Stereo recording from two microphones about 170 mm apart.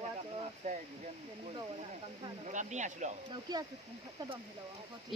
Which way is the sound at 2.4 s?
45° right (ahead or behind).